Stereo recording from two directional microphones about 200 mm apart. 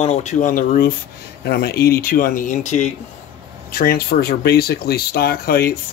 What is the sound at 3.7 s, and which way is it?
Speech, 50° left (ahead or behind).